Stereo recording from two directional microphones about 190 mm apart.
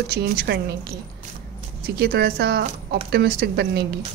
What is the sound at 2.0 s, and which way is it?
Speech, 55° right (ahead or behind).